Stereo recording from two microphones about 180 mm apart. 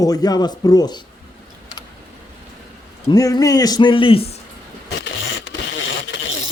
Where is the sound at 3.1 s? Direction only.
20° left (ahead or behind).